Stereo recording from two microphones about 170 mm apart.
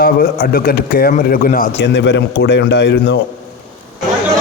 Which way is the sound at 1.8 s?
90° left.